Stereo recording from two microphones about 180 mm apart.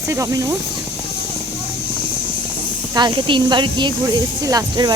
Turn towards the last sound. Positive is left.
turn(degrees=-20)  # may be behind; listen again after turning